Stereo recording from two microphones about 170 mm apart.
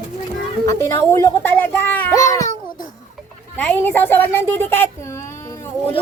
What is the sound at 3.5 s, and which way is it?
Speech, 10° left (ahead or behind).